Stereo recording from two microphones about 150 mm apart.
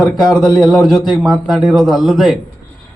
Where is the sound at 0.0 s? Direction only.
Centre (ahead or behind).